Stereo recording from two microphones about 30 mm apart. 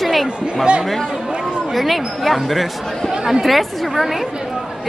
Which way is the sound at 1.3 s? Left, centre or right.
Right.